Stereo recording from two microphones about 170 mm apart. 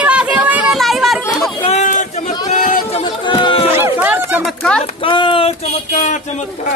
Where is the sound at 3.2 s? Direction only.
30° left (ahead or behind).